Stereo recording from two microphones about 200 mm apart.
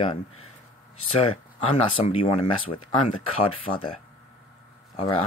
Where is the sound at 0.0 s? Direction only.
25° left (ahead or behind).